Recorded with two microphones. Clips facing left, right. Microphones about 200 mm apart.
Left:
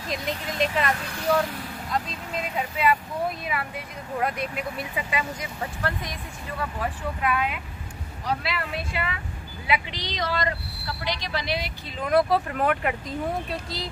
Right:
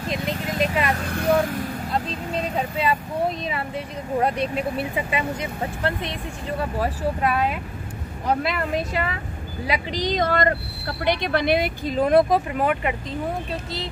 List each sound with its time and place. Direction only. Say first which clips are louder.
0.6 s speech: right 2 dB; 10° right (ahead or behind)
1.0 s speech: right 6 dB; 55° right (ahead or behind)
1.9 s speech: right 4 dB; 30° right (ahead or behind)
6.6 s speech: right 5 dB; 35° right (ahead or behind)
8.3 s speech: right 6 dB; 50° right (ahead or behind)
12.3 s speech: right 3 dB; 15° right (ahead or behind)